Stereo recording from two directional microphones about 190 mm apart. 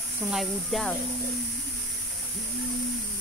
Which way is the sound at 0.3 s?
Centre (ahead or behind).